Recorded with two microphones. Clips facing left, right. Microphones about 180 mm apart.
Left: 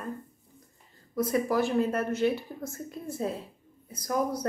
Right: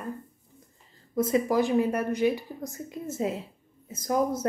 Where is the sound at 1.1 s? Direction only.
20° right (ahead or behind).